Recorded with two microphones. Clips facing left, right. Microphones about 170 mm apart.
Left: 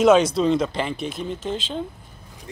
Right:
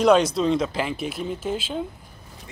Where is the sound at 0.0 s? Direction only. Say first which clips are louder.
Left 2 dB; centre (ahead or behind).